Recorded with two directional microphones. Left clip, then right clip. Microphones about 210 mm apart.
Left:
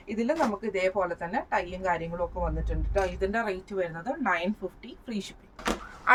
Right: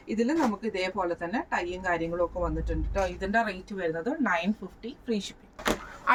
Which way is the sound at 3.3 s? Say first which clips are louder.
Right 2 dB; 15° left (ahead or behind).